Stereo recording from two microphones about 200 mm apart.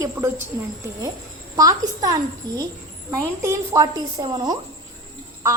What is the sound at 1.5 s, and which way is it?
A woman's voice, 15° right (ahead or behind).